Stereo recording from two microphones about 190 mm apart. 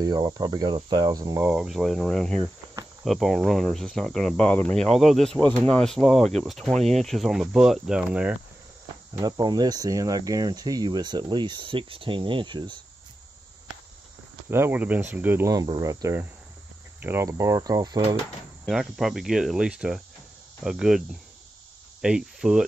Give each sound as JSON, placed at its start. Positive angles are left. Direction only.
{"t": 0.0, "sound": "speech", "side_deg": -20}
{"t": 9.1, "sound": "speech", "side_deg": -20}
{"t": 14.5, "sound": "speech", "side_deg": -10}
{"t": 18.7, "sound": "speech", "side_deg": 0}